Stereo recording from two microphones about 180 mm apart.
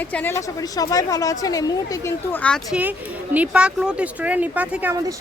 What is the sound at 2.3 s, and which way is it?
Speech, 5° left (ahead or behind).